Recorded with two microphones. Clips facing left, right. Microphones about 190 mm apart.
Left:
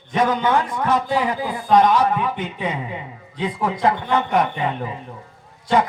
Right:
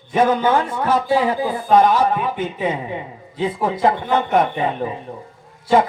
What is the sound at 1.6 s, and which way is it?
Speech, 5° right (ahead or behind).